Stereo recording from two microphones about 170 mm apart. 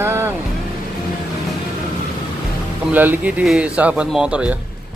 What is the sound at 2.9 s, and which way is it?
Speech, 10° right (ahead or behind).